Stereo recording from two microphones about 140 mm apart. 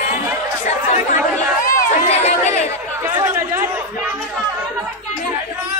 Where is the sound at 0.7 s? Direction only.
60° left (ahead or behind).